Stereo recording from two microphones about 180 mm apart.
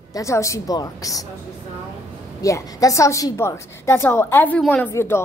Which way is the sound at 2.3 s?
20° left (ahead or behind).